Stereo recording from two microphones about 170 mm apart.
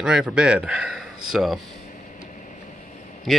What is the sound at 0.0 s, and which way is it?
Speech, 5° right (ahead or behind).